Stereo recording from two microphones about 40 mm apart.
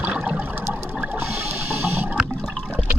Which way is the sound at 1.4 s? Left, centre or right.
Right.